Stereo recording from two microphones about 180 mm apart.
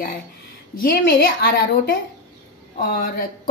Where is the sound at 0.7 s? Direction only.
55° left (ahead or behind).